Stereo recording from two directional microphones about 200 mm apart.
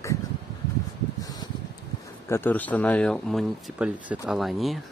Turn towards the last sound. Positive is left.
turn(degrees=0)  # may be behind; listen again after turning